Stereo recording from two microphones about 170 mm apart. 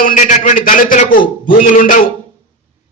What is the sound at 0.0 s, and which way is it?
A man's voice, 50° left (ahead or behind).